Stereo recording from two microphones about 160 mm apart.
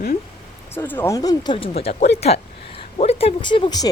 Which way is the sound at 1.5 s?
35° left (ahead or behind).